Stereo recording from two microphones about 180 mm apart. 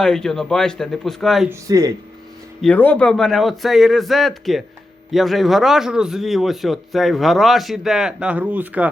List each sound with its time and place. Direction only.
0.0 s a man's voice: 5° left (ahead or behind)
1.5 s speech: 20° right (ahead or behind)
2.6 s a man's voice: 5° left (ahead or behind)